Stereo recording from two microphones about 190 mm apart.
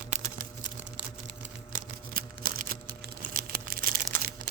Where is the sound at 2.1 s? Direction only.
50° right (ahead or behind).